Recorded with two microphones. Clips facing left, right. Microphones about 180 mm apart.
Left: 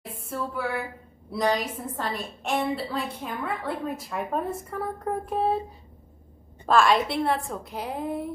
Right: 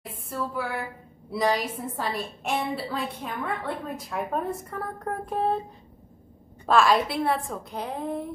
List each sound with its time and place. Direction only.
0.1 s a sound: centre (ahead or behind)
1.3 s a woman's voice: centre (ahead or behind)
6.6 s a woman's voice: centre (ahead or behind)